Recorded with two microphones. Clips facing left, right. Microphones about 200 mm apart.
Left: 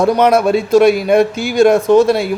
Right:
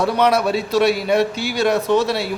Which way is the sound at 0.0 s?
50° left (ahead or behind).